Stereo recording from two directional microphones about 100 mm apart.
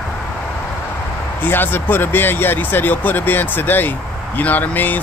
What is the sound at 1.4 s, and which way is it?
Speech, 20° left (ahead or behind).